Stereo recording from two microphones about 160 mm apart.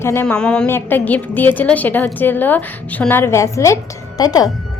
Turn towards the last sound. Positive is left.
turn(degrees=25)  # may be behind; listen again after turning